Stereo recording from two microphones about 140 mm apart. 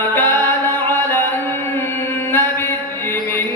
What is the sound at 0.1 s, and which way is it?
Music, 15° left (ahead or behind).